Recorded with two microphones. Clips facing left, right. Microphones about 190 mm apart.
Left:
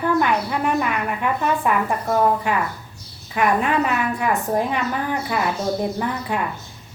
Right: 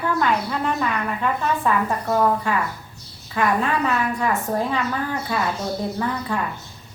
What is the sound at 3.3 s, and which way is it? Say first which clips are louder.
Speech: left 2 dB; 15° left (ahead or behind).